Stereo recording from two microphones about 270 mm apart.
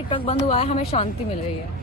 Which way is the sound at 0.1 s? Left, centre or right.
Centre.